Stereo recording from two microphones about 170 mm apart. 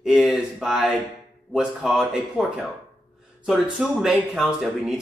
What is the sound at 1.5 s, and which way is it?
Speech, 5° right (ahead or behind).